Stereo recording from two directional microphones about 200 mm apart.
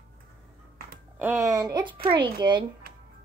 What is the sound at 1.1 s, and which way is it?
Speech, 10° right (ahead or behind).